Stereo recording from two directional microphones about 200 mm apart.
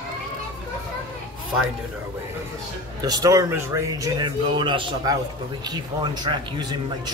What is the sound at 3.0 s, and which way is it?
Speech, 20° right (ahead or behind).